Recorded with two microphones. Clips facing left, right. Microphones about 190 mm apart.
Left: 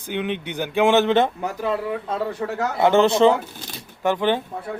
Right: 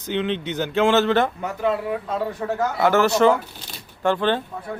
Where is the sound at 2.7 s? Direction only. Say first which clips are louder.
Left 3 dB; 25° left (ahead or behind).